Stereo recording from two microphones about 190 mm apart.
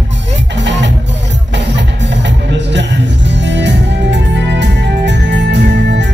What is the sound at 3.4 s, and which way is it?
Music, 65° right (ahead or behind).